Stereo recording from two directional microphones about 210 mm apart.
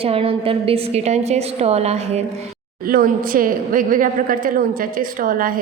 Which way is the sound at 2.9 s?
45° right (ahead or behind).